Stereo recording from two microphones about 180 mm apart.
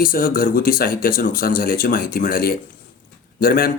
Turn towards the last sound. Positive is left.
turn(degrees=55)  # may be behind; listen again after turning